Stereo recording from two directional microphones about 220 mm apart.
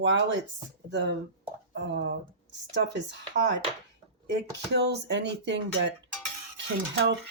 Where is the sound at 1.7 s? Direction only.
55° right (ahead or behind).